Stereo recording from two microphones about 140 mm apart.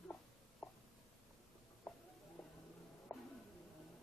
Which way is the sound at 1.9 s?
5° left (ahead or behind).